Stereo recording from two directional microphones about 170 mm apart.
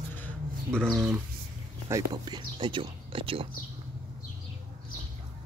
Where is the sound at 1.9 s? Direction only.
25° right (ahead or behind).